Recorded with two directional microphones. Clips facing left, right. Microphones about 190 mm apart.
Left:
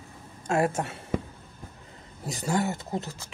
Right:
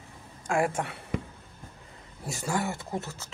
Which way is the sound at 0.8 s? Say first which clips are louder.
Left 2 dB; 25° left (ahead or behind).